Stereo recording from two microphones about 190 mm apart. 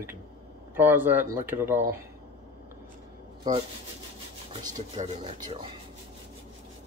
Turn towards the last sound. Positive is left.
turn(degrees=-20)  # may be behind; listen again after turning